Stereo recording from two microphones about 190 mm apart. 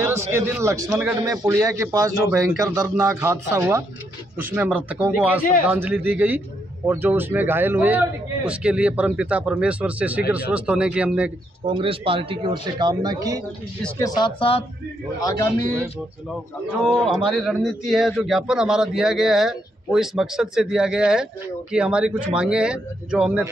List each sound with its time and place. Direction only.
0.0 s a man's voice: 10° right (ahead or behind)
11.6 s speech: 25° right (ahead or behind)
13.8 s speech: 15° left (ahead or behind)
16.8 s a man's voice: centre (ahead or behind)